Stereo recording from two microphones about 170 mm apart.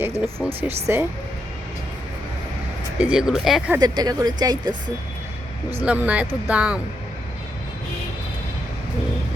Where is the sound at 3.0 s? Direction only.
5° right (ahead or behind).